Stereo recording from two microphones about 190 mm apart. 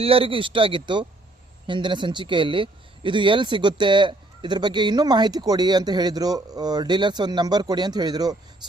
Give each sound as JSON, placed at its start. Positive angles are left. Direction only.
{"t": 0.0, "sound": "speech", "side_deg": -30}